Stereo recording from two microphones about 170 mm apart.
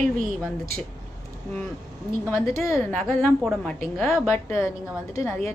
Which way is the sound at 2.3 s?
15° left (ahead or behind).